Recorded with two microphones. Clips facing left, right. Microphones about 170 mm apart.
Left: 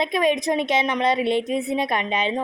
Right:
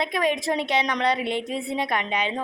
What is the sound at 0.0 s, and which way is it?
A woman's voice, 20° left (ahead or behind).